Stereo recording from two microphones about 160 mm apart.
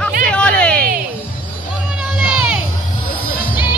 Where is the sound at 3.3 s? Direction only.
65° left (ahead or behind).